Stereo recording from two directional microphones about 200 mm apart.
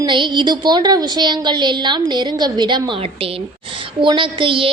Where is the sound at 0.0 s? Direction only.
20° right (ahead or behind).